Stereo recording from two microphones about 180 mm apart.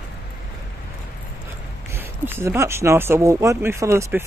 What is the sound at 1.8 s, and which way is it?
Speech, 10° right (ahead or behind).